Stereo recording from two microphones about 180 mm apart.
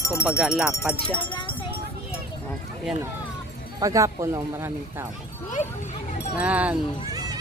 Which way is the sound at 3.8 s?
20° right (ahead or behind).